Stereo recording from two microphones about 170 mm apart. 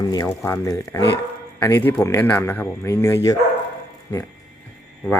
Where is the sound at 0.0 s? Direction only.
20° left (ahead or behind).